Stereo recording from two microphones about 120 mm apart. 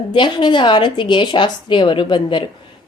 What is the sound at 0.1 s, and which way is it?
A woman's voice, 40° left (ahead or behind).